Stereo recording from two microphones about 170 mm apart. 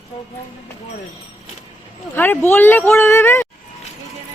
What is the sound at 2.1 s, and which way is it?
Speech, 10° left (ahead or behind).